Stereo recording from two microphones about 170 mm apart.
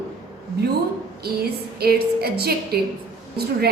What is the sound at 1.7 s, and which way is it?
A woman's voice, 65° right (ahead or behind).